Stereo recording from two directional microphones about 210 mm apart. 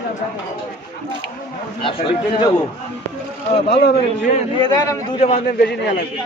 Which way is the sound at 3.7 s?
50° left (ahead or behind).